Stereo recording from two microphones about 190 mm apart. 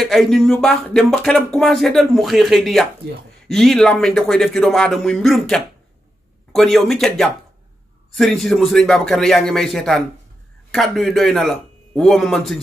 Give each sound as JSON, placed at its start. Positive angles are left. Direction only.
{"t": 0.0, "sound": "speech", "side_deg": 0}